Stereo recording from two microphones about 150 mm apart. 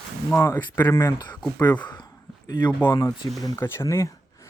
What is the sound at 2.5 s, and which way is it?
Speech, 30° left (ahead or behind).